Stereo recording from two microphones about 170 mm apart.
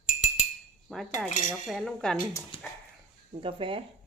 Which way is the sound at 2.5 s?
30° left (ahead or behind).